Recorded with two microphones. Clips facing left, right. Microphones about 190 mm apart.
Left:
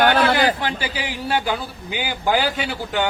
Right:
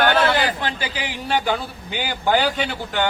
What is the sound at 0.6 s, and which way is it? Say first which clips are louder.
A man's voice: left 1 dB; 10° left (ahead or behind).